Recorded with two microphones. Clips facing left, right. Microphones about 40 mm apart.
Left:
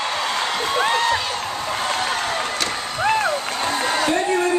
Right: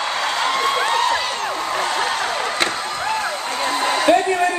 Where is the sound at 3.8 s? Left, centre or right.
Right.